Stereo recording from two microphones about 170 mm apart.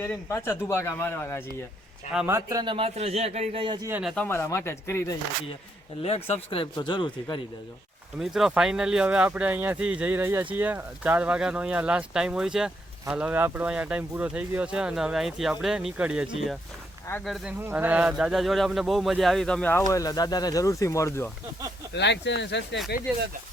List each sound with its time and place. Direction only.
0.0 s speech: 15° left (ahead or behind)
2.1 s a man's voice: 15° right (ahead or behind); by 3.8 s 35° right (ahead or behind)
4.0 s speech: 5° left (ahead or behind)
6.0 s speech: 35° left (ahead or behind)
8.2 s speech: centre (ahead or behind)
17.6 s speech: 10° right (ahead or behind); by 19.8 s 5° left (ahead or behind)
19.8 s speech: 20° left (ahead or behind)
21.9 s speech: 90° left